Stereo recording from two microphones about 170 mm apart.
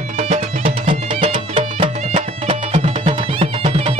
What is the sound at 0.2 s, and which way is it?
Music, 45° right (ahead or behind).